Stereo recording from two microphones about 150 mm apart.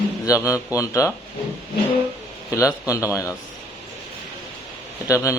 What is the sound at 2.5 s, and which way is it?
Speech, 20° left (ahead or behind).